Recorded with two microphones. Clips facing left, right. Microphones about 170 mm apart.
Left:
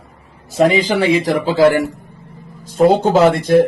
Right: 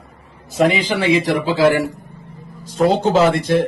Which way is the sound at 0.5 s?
40° left (ahead or behind).